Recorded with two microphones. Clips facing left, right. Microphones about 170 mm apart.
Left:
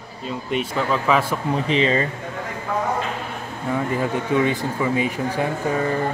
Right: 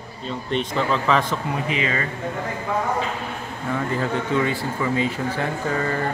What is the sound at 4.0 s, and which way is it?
Speech, 15° left (ahead or behind).